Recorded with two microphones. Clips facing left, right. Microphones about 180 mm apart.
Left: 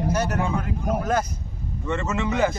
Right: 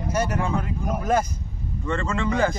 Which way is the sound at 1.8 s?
10° left (ahead or behind).